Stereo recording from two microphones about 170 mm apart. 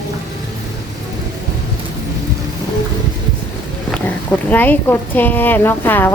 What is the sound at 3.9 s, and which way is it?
Speech, 10° left (ahead or behind).